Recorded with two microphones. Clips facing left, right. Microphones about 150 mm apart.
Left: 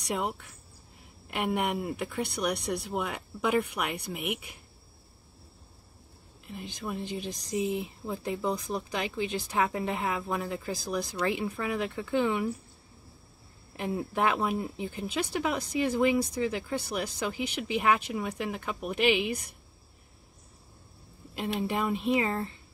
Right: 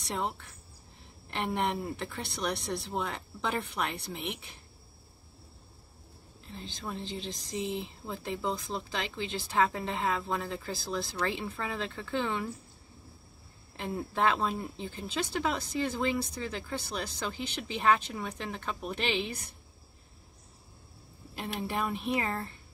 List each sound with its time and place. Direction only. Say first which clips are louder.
0.1 s speech: left 3 dB; 15° left (ahead or behind)
6.4 s speech: left 3 dB; 15° left (ahead or behind)
13.9 s speech: even; 15° left (ahead or behind)
21.5 s speech: left 3 dB; 20° left (ahead or behind)